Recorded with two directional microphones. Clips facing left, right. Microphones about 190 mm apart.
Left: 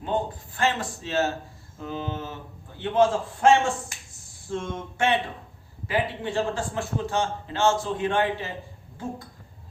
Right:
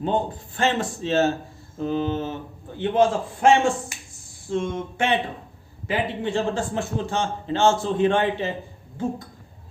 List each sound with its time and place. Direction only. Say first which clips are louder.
0.0 s a man's voice: right 3 dB; 25° right (ahead or behind)
4.5 s a sound: right 5 dB; 15° right (ahead or behind)
5.9 s a man's voice: right 2 dB; 25° right (ahead or behind)